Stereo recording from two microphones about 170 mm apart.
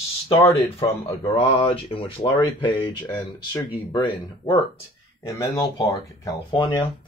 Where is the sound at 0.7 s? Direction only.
35° left (ahead or behind).